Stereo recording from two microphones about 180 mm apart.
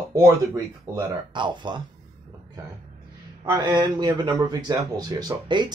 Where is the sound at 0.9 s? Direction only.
25° right (ahead or behind).